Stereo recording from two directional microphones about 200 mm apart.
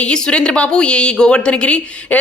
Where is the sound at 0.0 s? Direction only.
5° left (ahead or behind).